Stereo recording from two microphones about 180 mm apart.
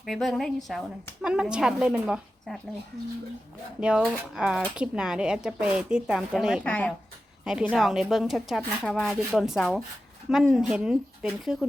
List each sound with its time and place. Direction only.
0.0 s speech: centre (ahead or behind)
3.8 s speech: 5° right (ahead or behind)
6.7 s speech: 10° left (ahead or behind)
7.4 s speech: 5° right (ahead or behind)